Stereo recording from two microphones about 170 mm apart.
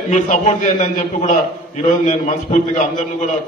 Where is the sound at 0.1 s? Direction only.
45° left (ahead or behind).